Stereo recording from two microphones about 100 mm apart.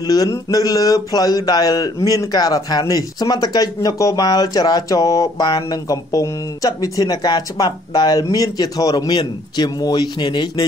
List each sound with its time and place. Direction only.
0.0 s speech: 40° left (ahead or behind)